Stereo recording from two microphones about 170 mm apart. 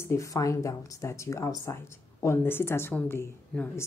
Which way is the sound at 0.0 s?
15° left (ahead or behind).